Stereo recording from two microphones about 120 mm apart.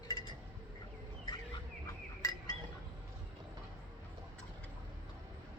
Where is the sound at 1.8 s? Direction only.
25° left (ahead or behind).